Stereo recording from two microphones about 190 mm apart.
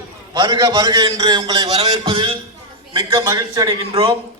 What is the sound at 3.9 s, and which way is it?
Speech, 30° right (ahead or behind).